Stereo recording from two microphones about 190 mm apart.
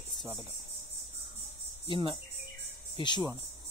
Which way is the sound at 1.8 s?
25° left (ahead or behind).